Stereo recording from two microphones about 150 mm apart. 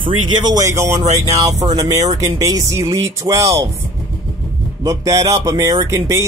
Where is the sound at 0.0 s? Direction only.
30° right (ahead or behind).